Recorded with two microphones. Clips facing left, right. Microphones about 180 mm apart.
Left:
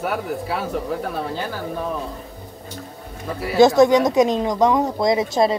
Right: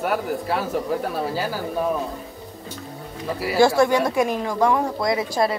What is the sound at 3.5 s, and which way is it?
Speech, 20° left (ahead or behind).